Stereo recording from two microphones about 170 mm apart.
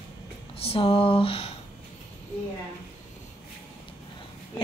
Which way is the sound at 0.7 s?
30° left (ahead or behind).